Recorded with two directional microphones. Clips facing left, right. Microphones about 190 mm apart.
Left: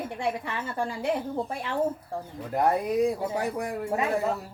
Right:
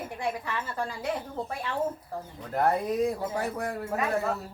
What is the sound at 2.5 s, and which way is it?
A man's voice, 15° left (ahead or behind).